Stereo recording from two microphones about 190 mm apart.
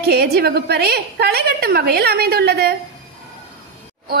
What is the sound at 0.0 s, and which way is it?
A woman's voice, 55° right (ahead or behind).